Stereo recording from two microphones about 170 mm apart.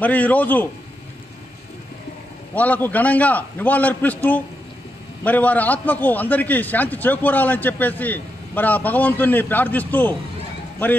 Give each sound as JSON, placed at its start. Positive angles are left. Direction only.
{"t": 0.0, "sound": "a man's voice", "side_deg": 10}
{"t": 2.5, "sound": "a man's voice", "side_deg": 10}